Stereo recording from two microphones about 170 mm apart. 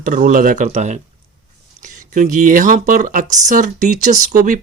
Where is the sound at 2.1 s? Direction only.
50° right (ahead or behind).